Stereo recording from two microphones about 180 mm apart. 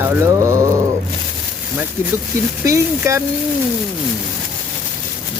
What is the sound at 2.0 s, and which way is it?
Speech, 15° right (ahead or behind).